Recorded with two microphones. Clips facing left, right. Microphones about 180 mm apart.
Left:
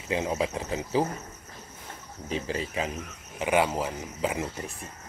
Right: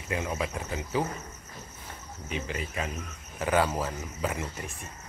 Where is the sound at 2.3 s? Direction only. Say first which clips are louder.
Left 4 dB; 30° left (ahead or behind).